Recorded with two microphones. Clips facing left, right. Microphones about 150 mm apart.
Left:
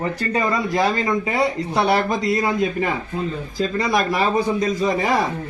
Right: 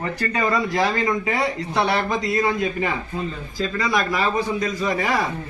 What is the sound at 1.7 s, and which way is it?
Speech, 35° left (ahead or behind).